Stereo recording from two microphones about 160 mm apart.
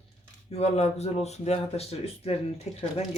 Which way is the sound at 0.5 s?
40° left (ahead or behind).